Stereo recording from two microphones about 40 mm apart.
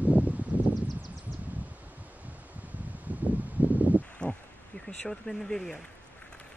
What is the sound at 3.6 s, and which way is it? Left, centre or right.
Rustling leaves, right.